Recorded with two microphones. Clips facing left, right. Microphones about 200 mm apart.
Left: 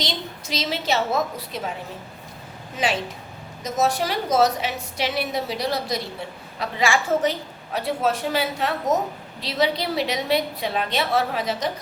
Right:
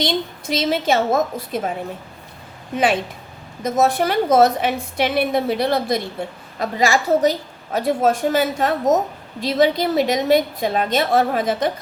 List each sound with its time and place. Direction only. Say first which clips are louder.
0.0 s a woman's voice: right 8 dB; 55° right (ahead or behind)
2.7 s a woman's voice: right 6 dB; 55° right (ahead or behind)